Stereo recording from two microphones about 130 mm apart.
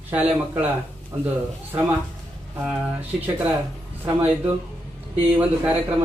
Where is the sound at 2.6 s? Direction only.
10° right (ahead or behind).